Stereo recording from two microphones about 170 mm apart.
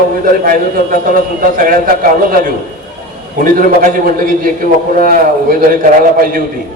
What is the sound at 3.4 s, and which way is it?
A man's voice, 55° right (ahead or behind).